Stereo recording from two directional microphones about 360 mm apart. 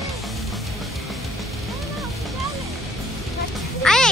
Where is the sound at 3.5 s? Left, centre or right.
Centre.